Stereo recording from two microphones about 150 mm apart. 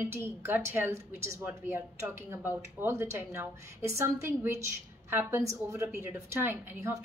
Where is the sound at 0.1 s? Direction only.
15° right (ahead or behind).